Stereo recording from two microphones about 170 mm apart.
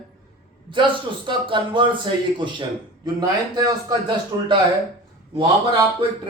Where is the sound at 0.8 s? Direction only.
30° right (ahead or behind).